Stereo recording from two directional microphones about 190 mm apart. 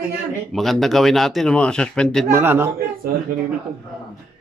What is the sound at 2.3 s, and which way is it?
Speech, 10° right (ahead or behind).